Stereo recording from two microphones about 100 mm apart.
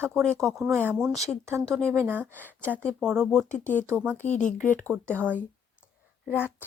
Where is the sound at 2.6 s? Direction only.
15° left (ahead or behind).